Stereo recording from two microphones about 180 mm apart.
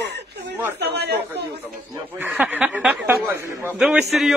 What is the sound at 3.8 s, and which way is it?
Speech, 5° right (ahead or behind).